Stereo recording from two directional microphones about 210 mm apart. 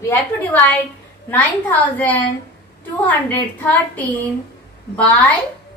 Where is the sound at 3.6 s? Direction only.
5° left (ahead or behind).